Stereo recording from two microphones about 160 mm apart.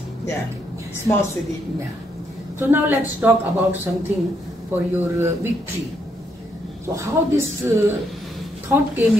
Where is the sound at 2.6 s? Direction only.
15° right (ahead or behind).